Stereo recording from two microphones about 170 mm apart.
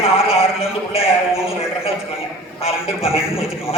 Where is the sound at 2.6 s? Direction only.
35° left (ahead or behind).